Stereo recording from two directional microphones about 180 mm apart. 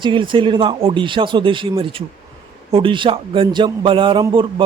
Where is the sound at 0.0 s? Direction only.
25° right (ahead or behind).